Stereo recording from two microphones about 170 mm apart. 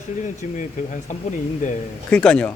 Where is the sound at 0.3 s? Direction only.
45° left (ahead or behind).